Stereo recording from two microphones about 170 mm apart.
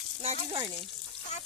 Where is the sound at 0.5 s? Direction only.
30° right (ahead or behind).